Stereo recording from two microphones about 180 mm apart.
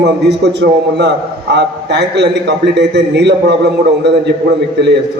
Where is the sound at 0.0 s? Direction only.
70° right (ahead or behind).